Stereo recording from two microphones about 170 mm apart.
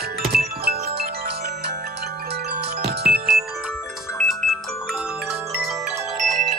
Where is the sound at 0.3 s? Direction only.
65° right (ahead or behind).